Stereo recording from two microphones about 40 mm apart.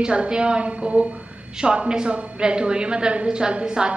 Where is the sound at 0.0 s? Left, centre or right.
Right.